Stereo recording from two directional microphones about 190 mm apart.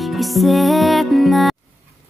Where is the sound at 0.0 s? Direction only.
Centre (ahead or behind).